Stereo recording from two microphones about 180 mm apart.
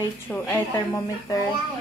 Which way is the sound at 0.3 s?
15° left (ahead or behind).